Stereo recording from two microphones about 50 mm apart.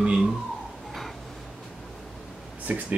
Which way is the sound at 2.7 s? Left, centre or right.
Right.